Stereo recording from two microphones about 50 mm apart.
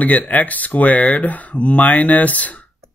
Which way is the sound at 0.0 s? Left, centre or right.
Left.